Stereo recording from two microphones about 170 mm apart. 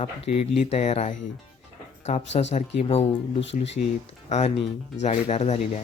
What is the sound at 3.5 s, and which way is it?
Speech, 45° left (ahead or behind).